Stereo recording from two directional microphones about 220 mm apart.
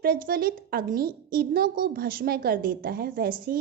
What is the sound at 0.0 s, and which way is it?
A woman's voice, 40° right (ahead or behind).